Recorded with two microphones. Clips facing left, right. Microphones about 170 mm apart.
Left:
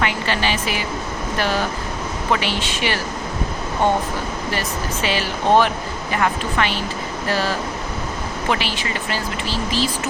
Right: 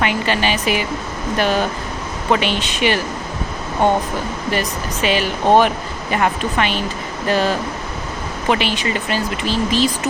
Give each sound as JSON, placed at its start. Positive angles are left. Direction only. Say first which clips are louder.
{"t": 0.0, "sound": "speech", "louder": "right 3 dB", "side_deg": -15}
{"t": 5.0, "sound": "speech", "louder": "right 4 dB", "side_deg": -15}